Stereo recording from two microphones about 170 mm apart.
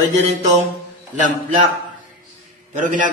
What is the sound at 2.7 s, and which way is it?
Speech, 50° right (ahead or behind).